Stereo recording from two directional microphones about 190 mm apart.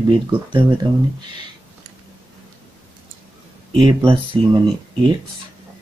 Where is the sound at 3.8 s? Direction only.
25° right (ahead or behind).